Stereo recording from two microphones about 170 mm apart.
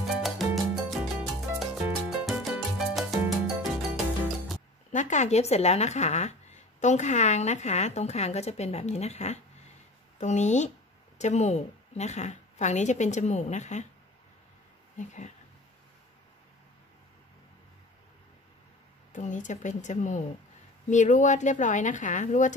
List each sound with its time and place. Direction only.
0.0 s music: centre (ahead or behind)
4.9 s a woman's voice: 45° left (ahead or behind)
15.0 s a woman's voice: 45° left (ahead or behind)
19.1 s a woman's voice: 45° left (ahead or behind)